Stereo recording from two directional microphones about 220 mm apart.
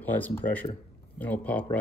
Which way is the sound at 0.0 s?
10° left (ahead or behind).